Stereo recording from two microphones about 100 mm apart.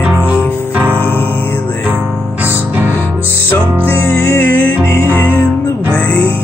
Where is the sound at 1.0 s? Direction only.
20° left (ahead or behind).